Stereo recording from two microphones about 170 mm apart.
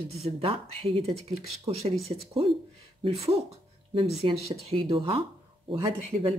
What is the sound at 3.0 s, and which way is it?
Speech, 35° right (ahead or behind).